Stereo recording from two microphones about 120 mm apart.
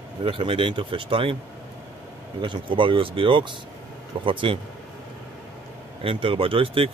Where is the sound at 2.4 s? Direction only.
45° right (ahead or behind).